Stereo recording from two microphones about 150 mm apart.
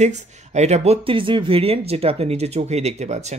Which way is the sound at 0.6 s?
50° right (ahead or behind).